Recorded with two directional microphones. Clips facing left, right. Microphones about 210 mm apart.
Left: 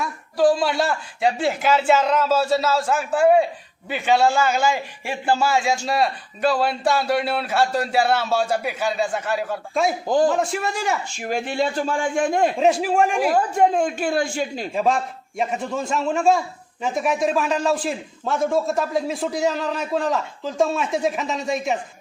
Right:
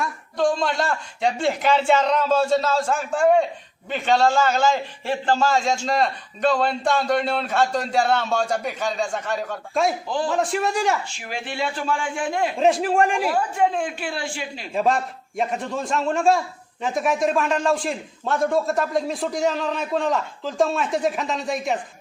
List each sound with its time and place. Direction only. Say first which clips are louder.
0.0 s a man's voice: left 4 dB; 5° left (ahead or behind)
10.1 s speech: left 7 dB; 45° left (ahead or behind)
10.3 s a man's voice: right 1 dB; centre (ahead or behind)
11.2 s speech: left 5 dB; 45° left (ahead or behind)
12.5 s a man's voice: even; centre (ahead or behind)
13.2 s speech: left 3 dB; 40° left (ahead or behind)
14.7 s a man's voice: right 2 dB; centre (ahead or behind)